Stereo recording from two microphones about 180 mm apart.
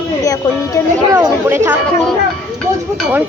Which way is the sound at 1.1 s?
10° right (ahead or behind).